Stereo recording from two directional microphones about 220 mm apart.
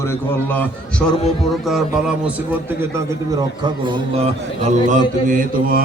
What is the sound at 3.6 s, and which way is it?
A man's voice, 20° right (ahead or behind).